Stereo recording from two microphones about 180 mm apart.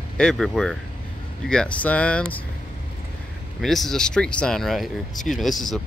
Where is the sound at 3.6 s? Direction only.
Centre (ahead or behind).